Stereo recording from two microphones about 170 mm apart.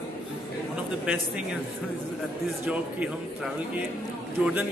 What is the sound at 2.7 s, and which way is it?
A man's voice, 10° right (ahead or behind).